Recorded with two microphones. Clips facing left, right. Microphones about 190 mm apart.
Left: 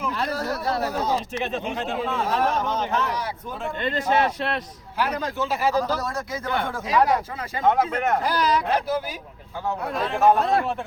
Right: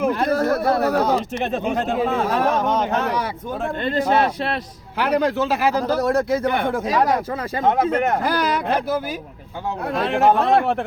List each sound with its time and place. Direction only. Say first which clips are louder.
0.0 s speech: right 8 dB; 50° right (ahead or behind)
3.8 s a man's voice: right 3 dB; 35° right (ahead or behind)
4.9 s speech: right 7 dB; 65° right (ahead or behind)
7.9 s speech: right 4 dB; 50° right (ahead or behind)
9.9 s speech: right 2 dB; 75° right (ahead or behind); by 10.8 s 60° right (ahead or behind)